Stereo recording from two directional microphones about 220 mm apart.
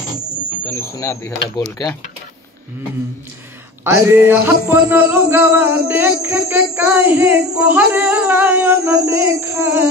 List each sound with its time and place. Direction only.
0.7 s speech: 10° left (ahead or behind)
3.8 s speech: 10° right (ahead or behind)